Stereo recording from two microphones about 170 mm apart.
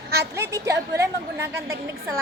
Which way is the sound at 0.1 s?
75° right (ahead or behind).